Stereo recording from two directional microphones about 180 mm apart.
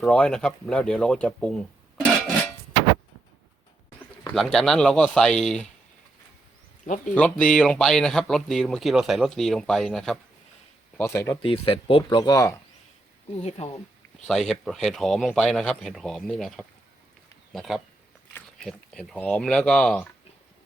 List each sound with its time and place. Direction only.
0.0 s speech: 5° left (ahead or behind)
4.4 s speech: centre (ahead or behind)
6.8 s speech: 45° left (ahead or behind)
7.1 s speech: 10° left (ahead or behind)
10.9 s speech: 15° left (ahead or behind)
11.4 s speech: 30° left (ahead or behind)
13.4 s speech: 40° left (ahead or behind)
14.3 s speech: centre (ahead or behind)